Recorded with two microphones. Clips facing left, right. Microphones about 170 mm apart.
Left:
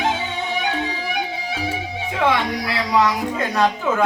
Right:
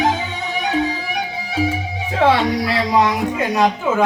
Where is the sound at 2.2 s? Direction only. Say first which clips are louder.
Right 5 dB; 25° right (ahead or behind).